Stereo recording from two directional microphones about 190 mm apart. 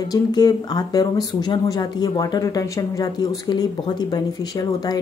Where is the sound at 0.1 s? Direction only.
20° left (ahead or behind).